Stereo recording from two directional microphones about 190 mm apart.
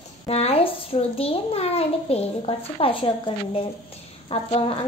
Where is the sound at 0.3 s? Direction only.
30° left (ahead or behind).